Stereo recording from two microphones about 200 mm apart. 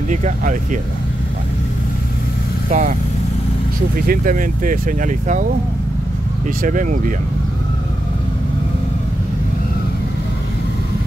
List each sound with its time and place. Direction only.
0.1 s speech: 40° right (ahead or behind)
2.7 s speech: 40° right (ahead or behind)
4.1 s speech: 45° right (ahead or behind)
6.6 s speech: 40° right (ahead or behind)